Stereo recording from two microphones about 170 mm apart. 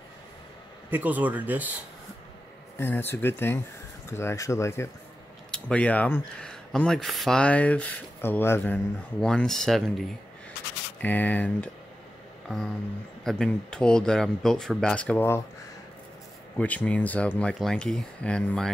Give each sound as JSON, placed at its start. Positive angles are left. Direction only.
{"t": 0.8, "sound": "speech", "side_deg": -10}
{"t": 2.8, "sound": "speech", "side_deg": 10}
{"t": 12.4, "sound": "a sound", "side_deg": 0}
{"t": 13.2, "sound": "speech", "side_deg": 5}
{"t": 16.5, "sound": "speech", "side_deg": 10}